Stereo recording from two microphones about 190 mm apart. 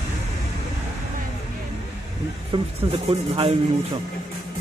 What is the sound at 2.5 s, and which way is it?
Speech, 25° right (ahead or behind).